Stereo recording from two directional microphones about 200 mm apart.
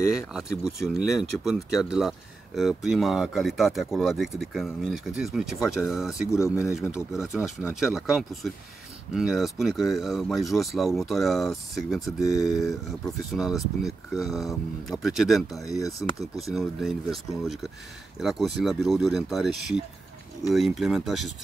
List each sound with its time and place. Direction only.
0.3 s speech: 5° right (ahead or behind)
15.6 s speech: 15° left (ahead or behind)
16.2 s speech: centre (ahead or behind)
18.2 s speech: centre (ahead or behind)